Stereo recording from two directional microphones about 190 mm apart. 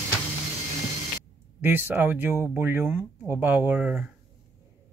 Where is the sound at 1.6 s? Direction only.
10° right (ahead or behind).